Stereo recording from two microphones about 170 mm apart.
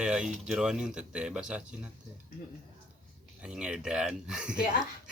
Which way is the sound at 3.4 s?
5° right (ahead or behind).